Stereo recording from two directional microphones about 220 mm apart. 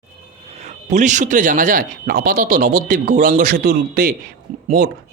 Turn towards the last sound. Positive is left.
turn(degrees=-35)  # may be behind; listen again after turning